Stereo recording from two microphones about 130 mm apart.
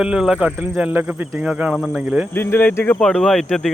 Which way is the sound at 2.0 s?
10° right (ahead or behind).